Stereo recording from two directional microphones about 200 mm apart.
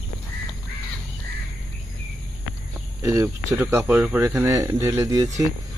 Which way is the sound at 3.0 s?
15° right (ahead or behind).